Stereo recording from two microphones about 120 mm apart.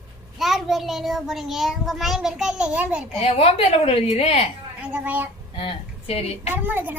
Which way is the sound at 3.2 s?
55° left (ahead or behind).